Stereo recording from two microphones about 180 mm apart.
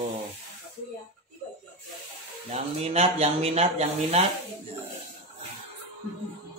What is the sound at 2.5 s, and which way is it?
Speech, 35° right (ahead or behind).